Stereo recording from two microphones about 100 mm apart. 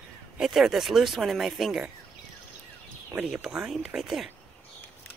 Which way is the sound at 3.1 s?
10° right (ahead or behind).